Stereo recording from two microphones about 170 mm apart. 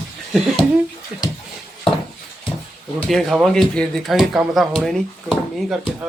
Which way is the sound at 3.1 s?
Centre (ahead or behind).